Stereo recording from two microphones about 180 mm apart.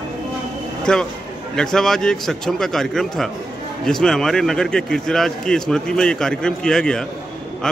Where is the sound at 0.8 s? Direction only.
5° left (ahead or behind).